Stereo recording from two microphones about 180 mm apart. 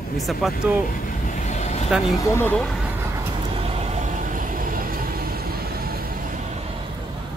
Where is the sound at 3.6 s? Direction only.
40° right (ahead or behind).